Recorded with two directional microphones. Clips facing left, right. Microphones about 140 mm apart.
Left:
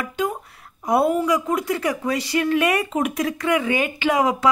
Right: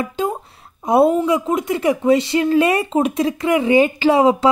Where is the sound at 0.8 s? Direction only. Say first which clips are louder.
Right 5 dB; 25° right (ahead or behind).